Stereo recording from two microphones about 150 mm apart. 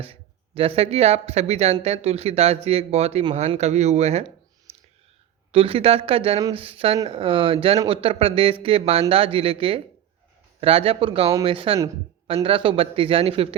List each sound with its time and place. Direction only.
0.0 s speech: 40° right (ahead or behind)
5.5 s speech: 40° right (ahead or behind)